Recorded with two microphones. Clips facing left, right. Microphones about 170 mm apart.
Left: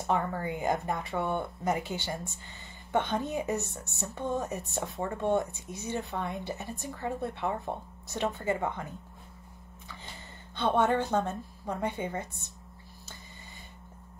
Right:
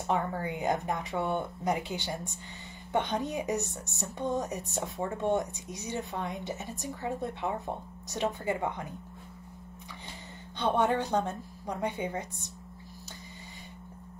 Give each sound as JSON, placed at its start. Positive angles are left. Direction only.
{"t": 0.0, "sound": "a woman's voice", "side_deg": -15}
{"t": 10.6, "sound": "a woman's voice", "side_deg": -15}